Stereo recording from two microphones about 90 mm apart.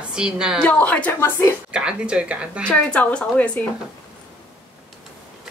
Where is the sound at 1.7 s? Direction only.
10° right (ahead or behind).